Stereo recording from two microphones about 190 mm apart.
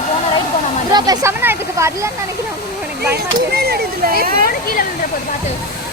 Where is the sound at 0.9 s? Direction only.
20° right (ahead or behind).